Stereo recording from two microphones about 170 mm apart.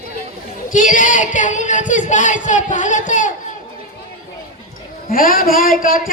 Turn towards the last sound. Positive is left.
turn(degrees=55)  # may be behind; listen again after turning